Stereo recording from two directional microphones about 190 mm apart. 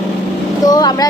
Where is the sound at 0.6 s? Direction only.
20° left (ahead or behind).